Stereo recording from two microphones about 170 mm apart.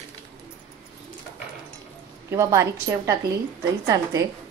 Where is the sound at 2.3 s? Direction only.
15° right (ahead or behind).